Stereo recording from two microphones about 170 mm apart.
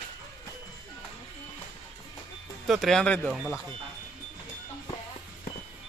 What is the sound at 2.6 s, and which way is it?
Speech, centre (ahead or behind).